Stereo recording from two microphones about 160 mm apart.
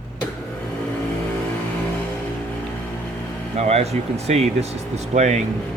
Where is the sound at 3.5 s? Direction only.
40° right (ahead or behind).